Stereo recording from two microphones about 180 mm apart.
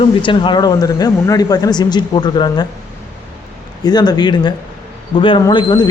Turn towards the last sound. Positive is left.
turn(degrees=25)  # may be behind; listen again after turning